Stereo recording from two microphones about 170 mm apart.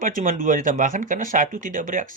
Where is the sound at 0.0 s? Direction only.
50° right (ahead or behind).